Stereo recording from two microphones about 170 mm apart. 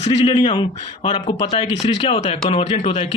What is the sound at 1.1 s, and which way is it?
Speech, 30° left (ahead or behind).